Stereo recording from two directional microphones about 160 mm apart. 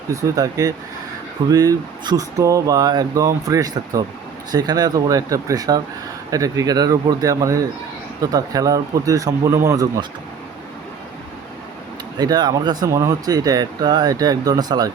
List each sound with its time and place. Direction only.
0.1 s speech: 20° right (ahead or behind)
12.2 s speech: 25° right (ahead or behind)